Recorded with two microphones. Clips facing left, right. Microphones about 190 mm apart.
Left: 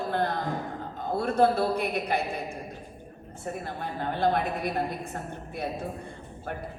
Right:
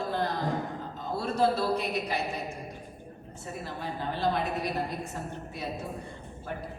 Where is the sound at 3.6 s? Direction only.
55° left (ahead or behind).